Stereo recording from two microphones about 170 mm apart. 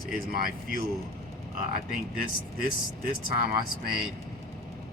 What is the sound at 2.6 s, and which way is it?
Speech, 60° right (ahead or behind).